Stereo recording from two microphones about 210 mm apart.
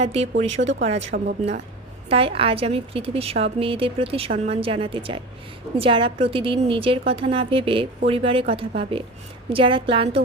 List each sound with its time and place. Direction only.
0.0 s a woman's voice: 30° right (ahead or behind)
0.6 s speech: 60° right (ahead or behind)
1.1 s a woman's voice: 45° right (ahead or behind)
2.0 s a woman's voice: 25° right (ahead or behind)